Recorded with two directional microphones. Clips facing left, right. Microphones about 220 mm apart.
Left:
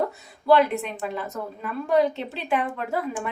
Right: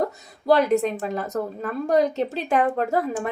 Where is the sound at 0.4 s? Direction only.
40° right (ahead or behind).